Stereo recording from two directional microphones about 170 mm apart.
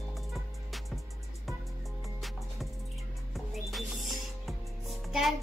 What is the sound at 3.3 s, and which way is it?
Music, centre (ahead or behind).